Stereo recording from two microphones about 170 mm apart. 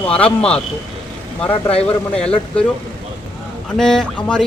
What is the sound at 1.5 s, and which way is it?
Speech, 35° left (ahead or behind).